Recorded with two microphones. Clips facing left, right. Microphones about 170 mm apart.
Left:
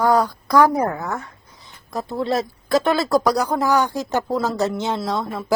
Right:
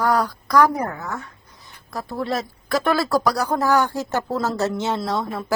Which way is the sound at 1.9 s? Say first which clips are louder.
Left 3 dB; 20° left (ahead or behind).